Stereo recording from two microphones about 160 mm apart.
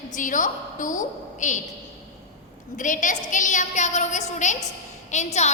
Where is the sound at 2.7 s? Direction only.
55° left (ahead or behind).